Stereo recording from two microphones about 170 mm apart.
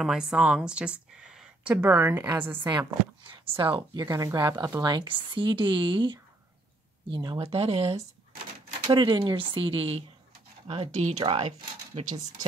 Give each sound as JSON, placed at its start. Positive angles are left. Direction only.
{"t": 0.0, "sound": "speech", "side_deg": -5}
{"t": 3.5, "sound": "speech", "side_deg": -30}
{"t": 11.1, "sound": "speech", "side_deg": -30}